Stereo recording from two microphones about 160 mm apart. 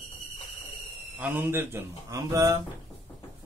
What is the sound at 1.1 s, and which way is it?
Speech, 10° right (ahead or behind).